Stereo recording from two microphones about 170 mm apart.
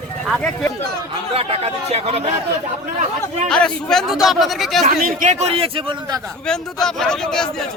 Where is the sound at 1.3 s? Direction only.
35° right (ahead or behind).